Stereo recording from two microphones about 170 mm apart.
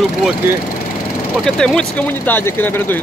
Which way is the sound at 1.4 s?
5° left (ahead or behind).